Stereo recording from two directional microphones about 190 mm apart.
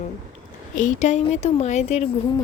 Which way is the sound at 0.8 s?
40° left (ahead or behind).